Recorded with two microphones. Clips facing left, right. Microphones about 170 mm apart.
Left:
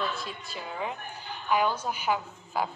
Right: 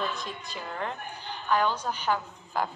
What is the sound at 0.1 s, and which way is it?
Speech, 20° right (ahead or behind).